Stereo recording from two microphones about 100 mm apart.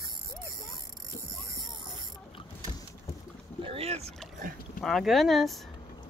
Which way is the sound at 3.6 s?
80° right.